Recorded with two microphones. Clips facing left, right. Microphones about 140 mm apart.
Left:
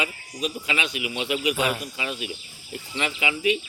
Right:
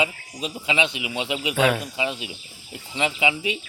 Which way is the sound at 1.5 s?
90° right.